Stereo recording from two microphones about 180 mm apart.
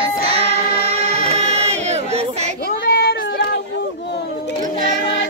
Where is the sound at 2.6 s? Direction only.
65° left (ahead or behind).